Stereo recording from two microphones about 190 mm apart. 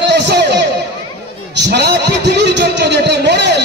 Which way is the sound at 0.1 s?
65° right (ahead or behind).